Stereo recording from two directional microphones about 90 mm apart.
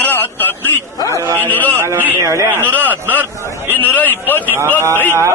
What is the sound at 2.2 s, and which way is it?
Speech, 35° right (ahead or behind).